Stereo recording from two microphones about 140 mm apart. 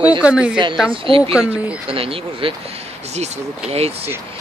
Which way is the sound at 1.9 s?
40° right (ahead or behind).